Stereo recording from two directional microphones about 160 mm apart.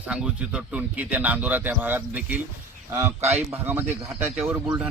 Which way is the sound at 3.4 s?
10° right (ahead or behind).